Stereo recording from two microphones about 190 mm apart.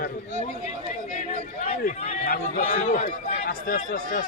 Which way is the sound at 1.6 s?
35° left (ahead or behind).